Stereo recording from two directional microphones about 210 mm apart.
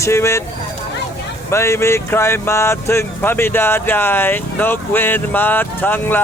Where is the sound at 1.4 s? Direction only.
15° left (ahead or behind).